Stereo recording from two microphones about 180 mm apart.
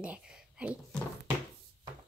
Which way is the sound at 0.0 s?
5° right (ahead or behind).